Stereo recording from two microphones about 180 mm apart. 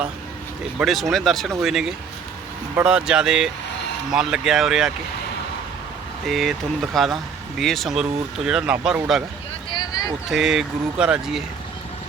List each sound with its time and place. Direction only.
0.8 s speech: centre (ahead or behind)
6.2 s speech: centre (ahead or behind)
9.6 s a sound: 25° left (ahead or behind)
10.2 s speech: centre (ahead or behind)